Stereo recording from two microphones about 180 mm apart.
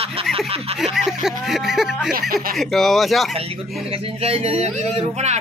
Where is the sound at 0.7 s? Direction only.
Centre (ahead or behind).